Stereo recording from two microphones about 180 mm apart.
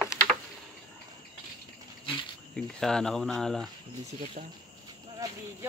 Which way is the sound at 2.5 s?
5° left (ahead or behind).